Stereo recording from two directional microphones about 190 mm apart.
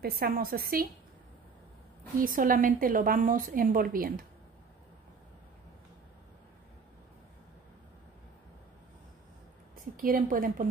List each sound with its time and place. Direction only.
0.0 s a woman's voice: 50° right (ahead or behind)
2.2 s a woman's voice: 45° right (ahead or behind)
10.0 s a woman's voice: 50° right (ahead or behind)